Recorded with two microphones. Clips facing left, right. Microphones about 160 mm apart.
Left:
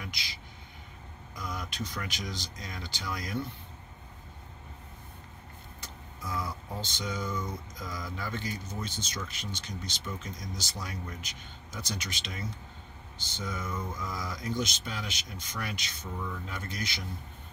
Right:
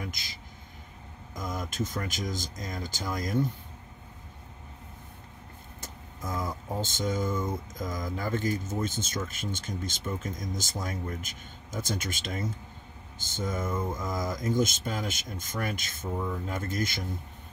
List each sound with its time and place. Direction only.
0.0 s speech: 45° right (ahead or behind)
5.8 s speech: 45° right (ahead or behind)